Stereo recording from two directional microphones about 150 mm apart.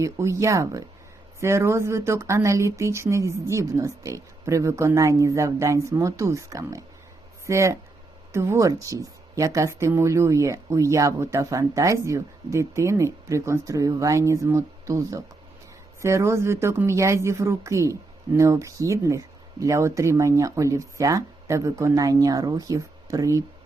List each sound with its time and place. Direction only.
0.0 s speech: 20° right (ahead or behind)